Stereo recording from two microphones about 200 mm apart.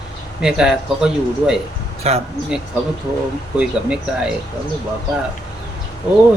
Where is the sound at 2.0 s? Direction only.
30° right (ahead or behind).